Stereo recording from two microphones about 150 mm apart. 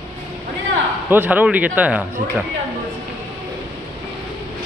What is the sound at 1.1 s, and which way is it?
Speech, 10° right (ahead or behind).